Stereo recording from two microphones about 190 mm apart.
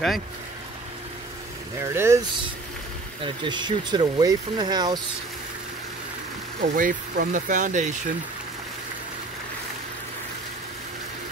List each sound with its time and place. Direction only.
1.8 s speech: 15° right (ahead or behind)
3.2 s speech: 25° right (ahead or behind)
6.6 s speech: 45° right (ahead or behind)